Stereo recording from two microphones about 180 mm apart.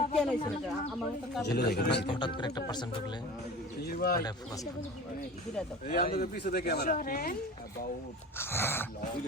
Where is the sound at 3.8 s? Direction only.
60° left (ahead or behind).